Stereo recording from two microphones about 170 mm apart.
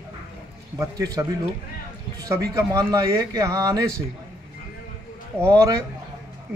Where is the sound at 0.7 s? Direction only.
20° right (ahead or behind).